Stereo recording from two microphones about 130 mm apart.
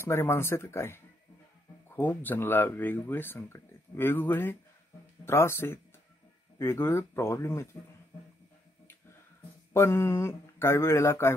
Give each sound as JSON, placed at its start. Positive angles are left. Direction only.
{"t": 0.0, "sound": "speech", "side_deg": 20}
{"t": 9.8, "sound": "speech", "side_deg": 20}